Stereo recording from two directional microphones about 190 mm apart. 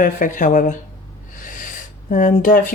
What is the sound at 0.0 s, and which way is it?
Speech, 45° left (ahead or behind).